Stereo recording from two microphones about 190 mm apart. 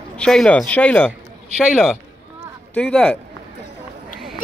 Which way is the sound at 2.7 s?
5° left (ahead or behind).